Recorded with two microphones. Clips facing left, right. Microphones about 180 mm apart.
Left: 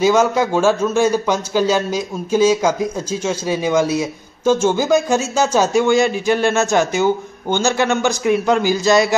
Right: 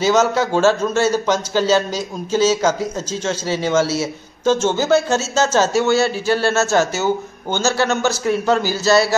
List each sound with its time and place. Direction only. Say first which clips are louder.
0.0 s speech: left 2 dB; 10° left (ahead or behind)